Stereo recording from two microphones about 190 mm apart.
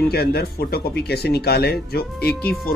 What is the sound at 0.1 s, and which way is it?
Speech, 55° left (ahead or behind).